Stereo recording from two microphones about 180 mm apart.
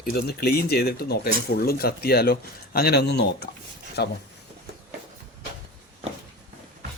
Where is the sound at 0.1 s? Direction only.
60° left (ahead or behind).